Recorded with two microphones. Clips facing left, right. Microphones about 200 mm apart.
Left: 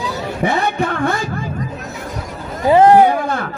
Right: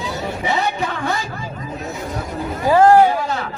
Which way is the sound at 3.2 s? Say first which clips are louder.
Left 3 dB; 55° left (ahead or behind).